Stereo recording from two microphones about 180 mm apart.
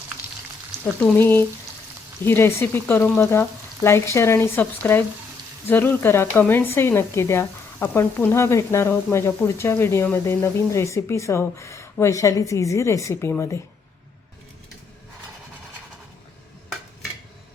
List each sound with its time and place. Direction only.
1.0 s speech: 10° left (ahead or behind)